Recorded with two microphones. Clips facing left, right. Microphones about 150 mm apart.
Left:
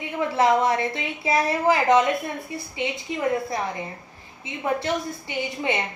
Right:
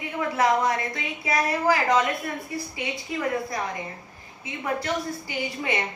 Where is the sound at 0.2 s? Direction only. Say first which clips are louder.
Left 3 dB; 25° left (ahead or behind).